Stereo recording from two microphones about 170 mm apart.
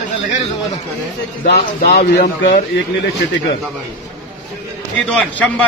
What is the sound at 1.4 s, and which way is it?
Speech, 60° left (ahead or behind).